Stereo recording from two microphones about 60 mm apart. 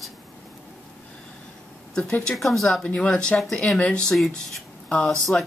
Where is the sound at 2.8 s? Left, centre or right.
Centre.